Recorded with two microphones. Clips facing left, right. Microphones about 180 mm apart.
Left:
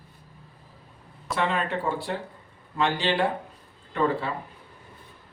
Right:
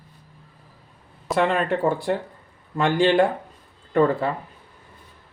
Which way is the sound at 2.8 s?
50° right (ahead or behind).